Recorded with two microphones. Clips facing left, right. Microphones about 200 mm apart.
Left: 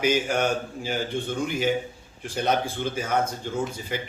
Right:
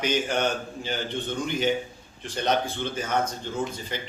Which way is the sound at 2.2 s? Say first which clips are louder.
Left 1 dB; 10° left (ahead or behind).